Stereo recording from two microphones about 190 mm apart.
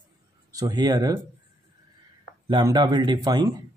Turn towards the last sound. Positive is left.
turn(degrees=-20)  # may be behind; listen again after turning